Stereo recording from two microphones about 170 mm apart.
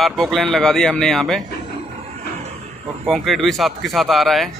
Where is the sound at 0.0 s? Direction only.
Centre (ahead or behind).